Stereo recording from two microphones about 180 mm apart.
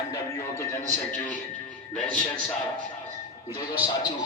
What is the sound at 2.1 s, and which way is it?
Speech, 50° right (ahead or behind).